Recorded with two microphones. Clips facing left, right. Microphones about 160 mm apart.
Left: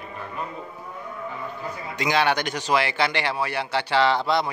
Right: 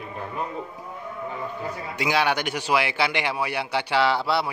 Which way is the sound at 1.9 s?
10° right (ahead or behind).